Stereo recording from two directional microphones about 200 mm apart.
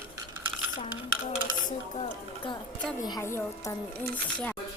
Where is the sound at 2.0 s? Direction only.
25° left (ahead or behind); by 4.5 s 5° left (ahead or behind).